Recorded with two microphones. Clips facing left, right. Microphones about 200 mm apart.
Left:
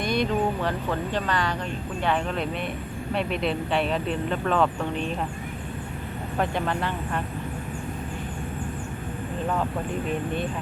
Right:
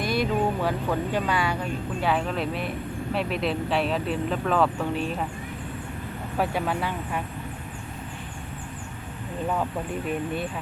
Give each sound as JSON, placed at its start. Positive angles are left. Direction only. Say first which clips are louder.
{"t": 0.0, "sound": "speech", "louder": "even", "side_deg": -5}
{"t": 6.3, "sound": "speech", "louder": "even", "side_deg": -5}